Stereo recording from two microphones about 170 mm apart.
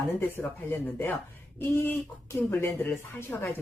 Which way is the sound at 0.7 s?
10° left (ahead or behind).